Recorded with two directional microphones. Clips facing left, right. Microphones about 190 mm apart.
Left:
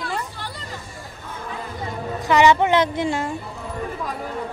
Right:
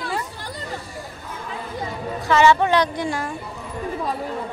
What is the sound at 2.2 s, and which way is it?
A woman's voice, 15° left (ahead or behind).